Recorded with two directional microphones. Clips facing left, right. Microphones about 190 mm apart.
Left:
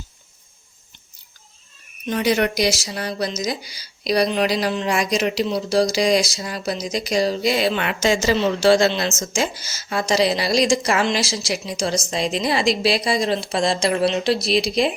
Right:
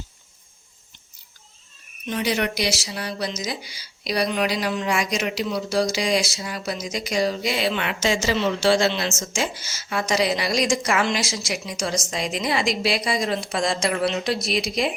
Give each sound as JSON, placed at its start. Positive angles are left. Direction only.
{"t": 2.0, "sound": "speech", "side_deg": 45}